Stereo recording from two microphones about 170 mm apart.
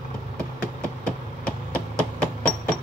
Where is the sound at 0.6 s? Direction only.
5° left (ahead or behind).